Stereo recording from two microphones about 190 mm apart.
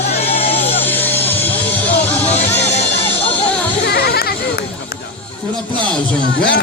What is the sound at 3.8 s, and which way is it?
Goat, 55° left (ahead or behind).